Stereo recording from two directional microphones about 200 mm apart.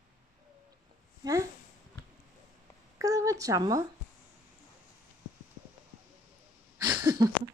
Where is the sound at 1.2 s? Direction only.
15° right (ahead or behind).